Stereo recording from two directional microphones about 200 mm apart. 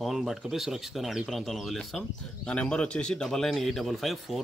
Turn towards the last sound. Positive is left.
turn(degrees=0)  # may be behind; listen again after turning